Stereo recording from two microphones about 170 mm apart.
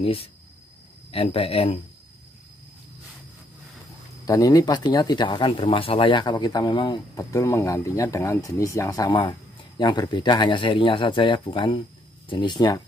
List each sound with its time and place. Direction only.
0.0 s speech: 35° left (ahead or behind)
4.3 s speech: 20° left (ahead or behind)